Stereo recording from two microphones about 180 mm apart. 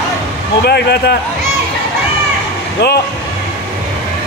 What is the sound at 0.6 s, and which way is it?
Speech, 65° left (ahead or behind).